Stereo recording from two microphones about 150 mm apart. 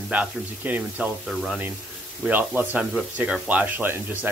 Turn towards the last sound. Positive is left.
turn(degrees=-15)  # may be behind; listen again after turning